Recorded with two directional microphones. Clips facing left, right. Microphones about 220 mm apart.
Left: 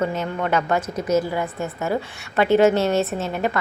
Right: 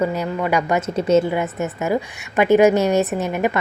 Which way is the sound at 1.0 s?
25° right (ahead or behind).